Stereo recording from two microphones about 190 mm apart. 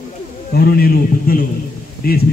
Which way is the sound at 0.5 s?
55° left (ahead or behind).